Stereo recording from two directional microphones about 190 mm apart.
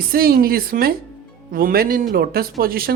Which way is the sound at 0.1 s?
50° right (ahead or behind).